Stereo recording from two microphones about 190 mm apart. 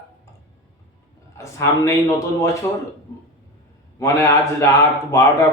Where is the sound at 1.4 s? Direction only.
15° left (ahead or behind).